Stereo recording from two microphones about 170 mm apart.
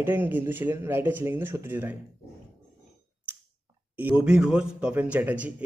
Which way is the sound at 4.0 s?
10° right (ahead or behind).